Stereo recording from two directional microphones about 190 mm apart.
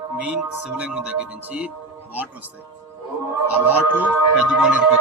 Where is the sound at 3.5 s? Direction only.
10° right (ahead or behind).